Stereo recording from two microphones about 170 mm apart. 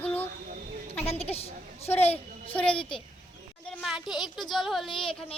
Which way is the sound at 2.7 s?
30° left (ahead or behind).